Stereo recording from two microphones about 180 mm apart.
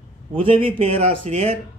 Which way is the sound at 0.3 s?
30° right (ahead or behind).